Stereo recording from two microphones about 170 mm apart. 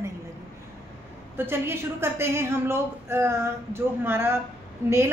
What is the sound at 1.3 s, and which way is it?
A woman's voice, 15° right (ahead or behind).